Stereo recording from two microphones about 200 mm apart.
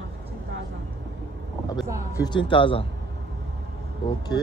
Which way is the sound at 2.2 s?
25° left (ahead or behind).